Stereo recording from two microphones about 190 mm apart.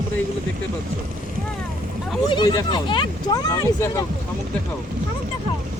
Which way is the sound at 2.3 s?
25° left (ahead or behind).